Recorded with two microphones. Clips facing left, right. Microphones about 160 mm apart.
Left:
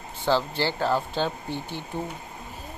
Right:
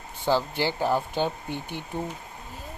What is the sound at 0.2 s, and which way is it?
Speech, 15° right (ahead or behind).